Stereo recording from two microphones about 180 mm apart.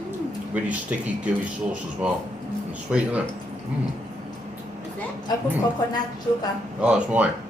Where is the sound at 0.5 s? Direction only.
5° right (ahead or behind).